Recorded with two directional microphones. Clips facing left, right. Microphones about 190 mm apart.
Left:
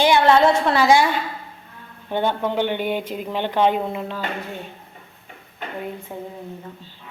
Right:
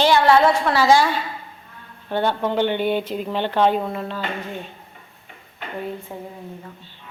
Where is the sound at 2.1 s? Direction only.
15° left (ahead or behind).